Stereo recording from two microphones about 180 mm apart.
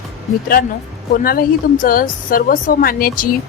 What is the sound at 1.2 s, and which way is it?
Speech, 55° left (ahead or behind).